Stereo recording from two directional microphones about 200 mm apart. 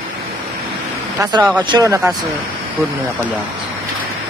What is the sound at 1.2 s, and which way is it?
Speech, 20° right (ahead or behind).